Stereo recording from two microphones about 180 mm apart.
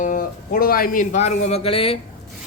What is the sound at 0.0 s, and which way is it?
Speech, 50° left (ahead or behind).